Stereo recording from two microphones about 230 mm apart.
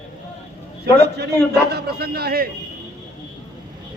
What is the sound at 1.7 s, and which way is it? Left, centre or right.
Speech, right.